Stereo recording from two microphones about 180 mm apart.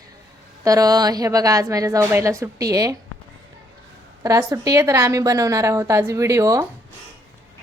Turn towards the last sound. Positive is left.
turn(degrees=-15)  # may be behind; listen again after turning